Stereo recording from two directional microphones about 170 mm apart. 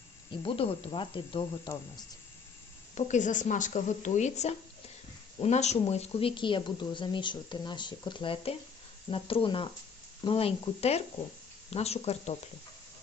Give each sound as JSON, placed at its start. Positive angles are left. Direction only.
{"t": 0.3, "sound": "speech", "side_deg": 30}
{"t": 2.9, "sound": "speech", "side_deg": 45}